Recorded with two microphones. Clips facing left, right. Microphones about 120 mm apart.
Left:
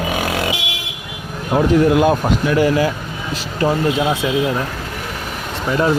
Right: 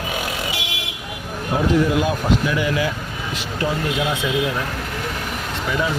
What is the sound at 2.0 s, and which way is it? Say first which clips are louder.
Speech: left 5 dB; 50° left (ahead or behind).